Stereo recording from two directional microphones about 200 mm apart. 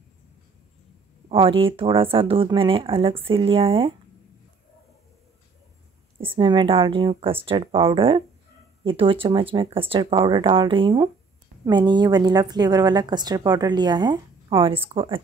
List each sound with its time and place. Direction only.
1.3 s speech: 25° right (ahead or behind)
6.3 s speech: 25° right (ahead or behind)